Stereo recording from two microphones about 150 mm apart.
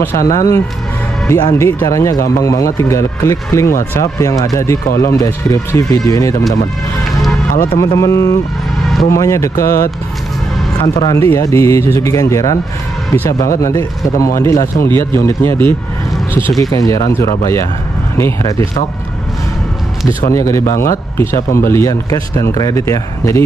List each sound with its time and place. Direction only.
0.0 s speech: 20° left (ahead or behind)
7.1 s music: centre (ahead or behind)
7.7 s speech: 20° left (ahead or behind)
11.1 s speech: 20° left (ahead or behind)
13.6 s speech: 20° left (ahead or behind)
16.7 s speech: 25° left (ahead or behind)
20.2 s speech: 20° left (ahead or behind)